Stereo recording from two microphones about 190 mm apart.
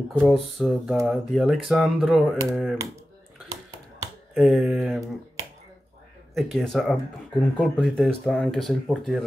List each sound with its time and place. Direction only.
0.1 s speech: centre (ahead or behind)
3.4 s a sound: 20° right (ahead or behind)
4.4 s speech: centre (ahead or behind)
6.3 s speech: centre (ahead or behind)